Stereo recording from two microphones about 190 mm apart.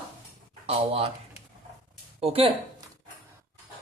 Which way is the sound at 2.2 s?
30° right (ahead or behind).